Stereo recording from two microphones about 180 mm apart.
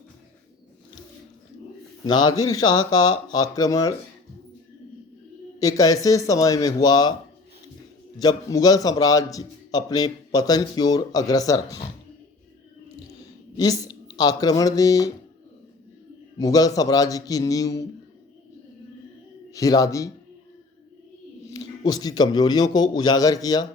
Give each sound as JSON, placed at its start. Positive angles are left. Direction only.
{"t": 2.0, "sound": "a man's voice", "side_deg": 25}
{"t": 5.5, "sound": "a man's voice", "side_deg": 20}
{"t": 8.2, "sound": "a man's voice", "side_deg": 20}
{"t": 13.6, "sound": "speech", "side_deg": 20}
{"t": 16.4, "sound": "a man's voice", "side_deg": 20}
{"t": 19.5, "sound": "a man's voice", "side_deg": 20}
{"t": 21.4, "sound": "a man's voice", "side_deg": 20}